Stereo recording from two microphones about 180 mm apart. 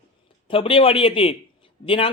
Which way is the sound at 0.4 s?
30° left (ahead or behind).